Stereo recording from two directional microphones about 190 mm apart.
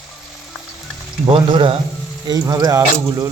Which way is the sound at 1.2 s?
25° right (ahead or behind).